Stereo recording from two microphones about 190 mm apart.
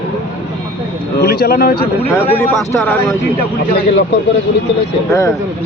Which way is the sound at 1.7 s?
30° left (ahead or behind).